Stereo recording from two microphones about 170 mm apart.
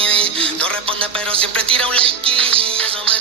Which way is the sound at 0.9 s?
5° left (ahead or behind).